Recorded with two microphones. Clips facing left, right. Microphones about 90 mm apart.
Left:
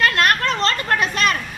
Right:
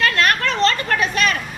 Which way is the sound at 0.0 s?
40° left (ahead or behind).